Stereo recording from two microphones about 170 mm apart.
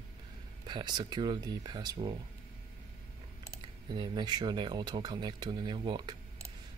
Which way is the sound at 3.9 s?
25° right (ahead or behind).